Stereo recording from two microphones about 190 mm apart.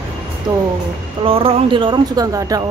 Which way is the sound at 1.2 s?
30° right (ahead or behind).